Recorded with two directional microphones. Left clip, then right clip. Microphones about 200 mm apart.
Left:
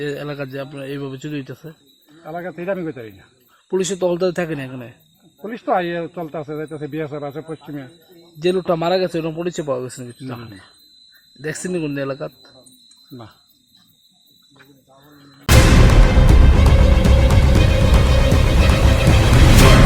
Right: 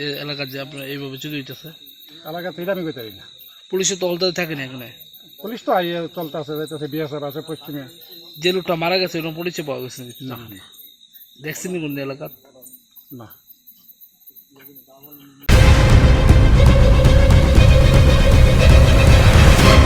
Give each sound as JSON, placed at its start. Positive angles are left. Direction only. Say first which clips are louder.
{"t": 0.0, "sound": "a man's voice", "louder": "even", "side_deg": 30}
{"t": 2.2, "sound": "speech", "louder": "even", "side_deg": 5}
{"t": 3.7, "sound": "a man's voice", "louder": "left 1 dB", "side_deg": 40}
{"t": 5.4, "sound": "speech", "louder": "even", "side_deg": 5}
{"t": 8.4, "sound": "a man's voice", "louder": "left 1 dB", "side_deg": 40}
{"t": 11.4, "sound": "speech", "louder": "left 3 dB", "side_deg": 40}
{"t": 15.7, "sound": "music", "louder": "left 1 dB", "side_deg": 0}